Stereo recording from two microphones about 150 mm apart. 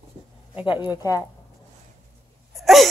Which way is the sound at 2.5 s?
Centre (ahead or behind).